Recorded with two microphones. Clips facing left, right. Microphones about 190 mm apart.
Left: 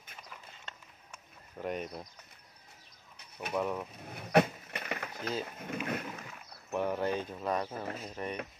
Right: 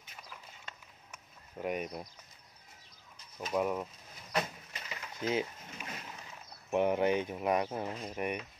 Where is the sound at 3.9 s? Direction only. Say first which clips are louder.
Left 9 dB; 60° left (ahead or behind).